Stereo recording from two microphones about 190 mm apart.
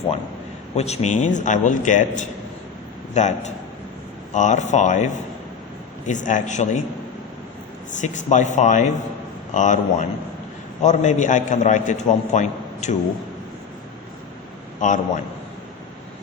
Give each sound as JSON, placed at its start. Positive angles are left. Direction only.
{"t": 0.8, "sound": "a man's voice", "side_deg": 35}
{"t": 7.9, "sound": "a man's voice", "side_deg": 40}
{"t": 14.8, "sound": "a man's voice", "side_deg": 40}